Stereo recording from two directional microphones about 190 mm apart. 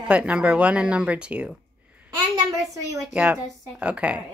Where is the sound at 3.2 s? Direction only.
5° right (ahead or behind).